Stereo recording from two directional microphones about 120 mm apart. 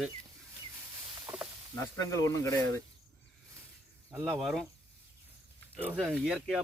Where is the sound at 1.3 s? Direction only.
25° right (ahead or behind).